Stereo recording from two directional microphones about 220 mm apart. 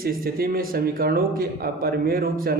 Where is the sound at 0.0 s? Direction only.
40° right (ahead or behind).